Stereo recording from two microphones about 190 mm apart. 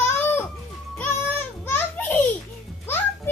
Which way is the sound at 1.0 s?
10° left (ahead or behind).